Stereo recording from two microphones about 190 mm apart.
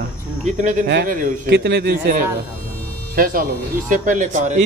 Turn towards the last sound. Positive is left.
turn(degrees=-40)  # may be behind; listen again after turning